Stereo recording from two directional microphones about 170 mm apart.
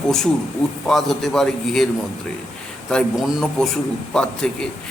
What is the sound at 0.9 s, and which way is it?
A man's voice, centre (ahead or behind).